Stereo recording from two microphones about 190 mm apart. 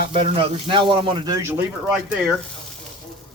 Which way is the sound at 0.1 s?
30° right (ahead or behind).